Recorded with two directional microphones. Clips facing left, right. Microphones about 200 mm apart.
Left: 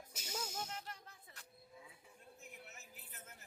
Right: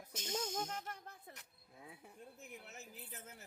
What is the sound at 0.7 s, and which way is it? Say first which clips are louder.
Music: right 3 dB; 50° right (ahead or behind).